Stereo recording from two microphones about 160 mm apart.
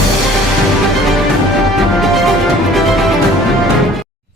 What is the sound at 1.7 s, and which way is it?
Music, centre (ahead or behind).